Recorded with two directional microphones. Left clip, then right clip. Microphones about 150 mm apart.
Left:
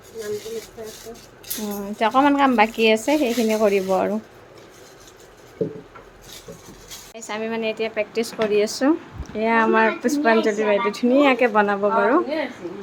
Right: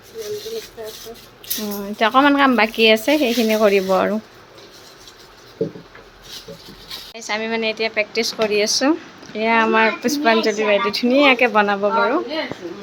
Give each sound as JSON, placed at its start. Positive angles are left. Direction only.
{"t": 1.6, "sound": "a woman's voice", "side_deg": 0}
{"t": 7.1, "sound": "a woman's voice", "side_deg": 5}
{"t": 11.9, "sound": "speech", "side_deg": 20}